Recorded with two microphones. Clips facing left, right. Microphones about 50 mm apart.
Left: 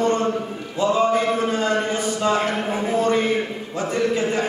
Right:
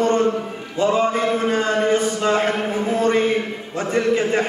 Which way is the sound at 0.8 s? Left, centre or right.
Right.